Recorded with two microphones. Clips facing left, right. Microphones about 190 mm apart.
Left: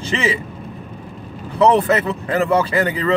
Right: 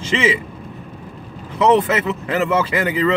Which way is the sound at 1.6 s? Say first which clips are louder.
Left 1 dB; 35° left (ahead or behind).